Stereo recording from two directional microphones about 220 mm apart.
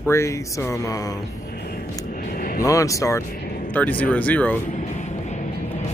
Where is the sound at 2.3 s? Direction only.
40° left (ahead or behind).